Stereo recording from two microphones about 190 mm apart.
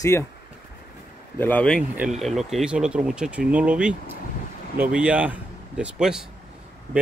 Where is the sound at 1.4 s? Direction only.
5° left (ahead or behind).